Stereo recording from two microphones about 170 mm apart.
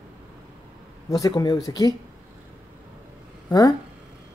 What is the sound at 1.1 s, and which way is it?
Speech, 25° left (ahead or behind).